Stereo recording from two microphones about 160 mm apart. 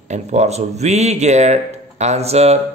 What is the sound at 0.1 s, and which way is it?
Speech, 45° right (ahead or behind).